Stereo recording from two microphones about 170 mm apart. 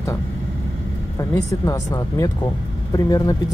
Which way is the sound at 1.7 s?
20° left (ahead or behind).